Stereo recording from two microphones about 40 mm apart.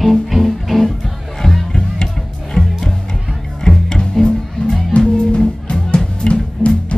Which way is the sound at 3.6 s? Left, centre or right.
Centre.